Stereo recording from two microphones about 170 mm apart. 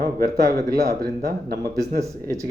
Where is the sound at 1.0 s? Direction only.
65° right (ahead or behind).